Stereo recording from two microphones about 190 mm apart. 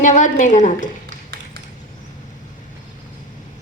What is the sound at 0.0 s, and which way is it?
Speech, 40° left (ahead or behind).